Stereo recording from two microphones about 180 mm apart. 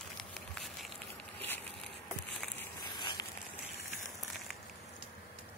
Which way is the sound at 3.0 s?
25° left (ahead or behind).